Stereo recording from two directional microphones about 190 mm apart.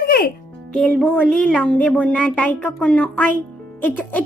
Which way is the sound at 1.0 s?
5° left (ahead or behind).